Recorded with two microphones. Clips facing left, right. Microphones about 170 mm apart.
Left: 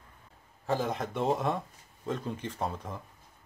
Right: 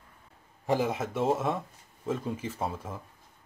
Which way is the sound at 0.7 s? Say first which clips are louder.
Right 3 dB; 10° right (ahead or behind).